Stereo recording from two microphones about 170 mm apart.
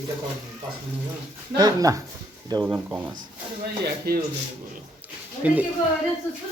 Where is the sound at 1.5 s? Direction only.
20° right (ahead or behind).